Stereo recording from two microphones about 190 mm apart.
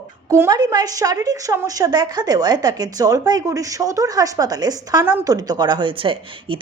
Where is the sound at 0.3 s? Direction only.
15° right (ahead or behind).